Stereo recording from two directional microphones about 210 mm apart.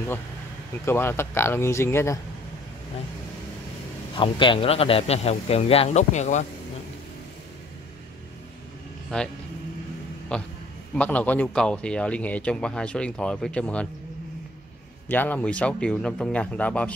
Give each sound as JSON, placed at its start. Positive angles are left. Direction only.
{"t": 0.8, "sound": "speech", "side_deg": 10}
{"t": 4.1, "sound": "a man's voice", "side_deg": 25}
{"t": 9.1, "sound": "speech", "side_deg": 5}
{"t": 10.3, "sound": "speech", "side_deg": 5}
{"t": 15.0, "sound": "speech", "side_deg": 10}